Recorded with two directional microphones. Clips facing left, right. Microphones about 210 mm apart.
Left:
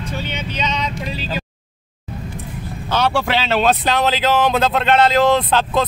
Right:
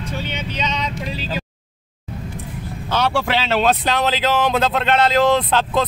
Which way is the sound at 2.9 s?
35° left (ahead or behind).